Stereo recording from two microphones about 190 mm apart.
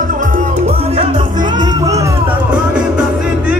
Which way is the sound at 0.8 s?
30° right (ahead or behind).